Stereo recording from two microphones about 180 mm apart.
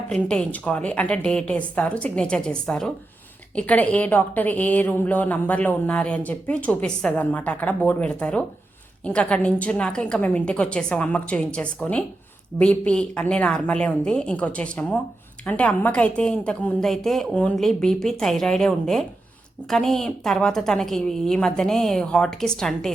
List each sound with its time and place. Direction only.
0.1 s a woman's voice: 5° left (ahead or behind)